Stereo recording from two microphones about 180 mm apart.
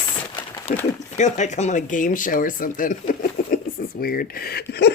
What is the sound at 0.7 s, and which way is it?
Speech, 40° left (ahead or behind).